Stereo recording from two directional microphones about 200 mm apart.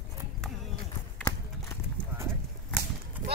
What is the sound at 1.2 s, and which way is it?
Horse, 20° left (ahead or behind).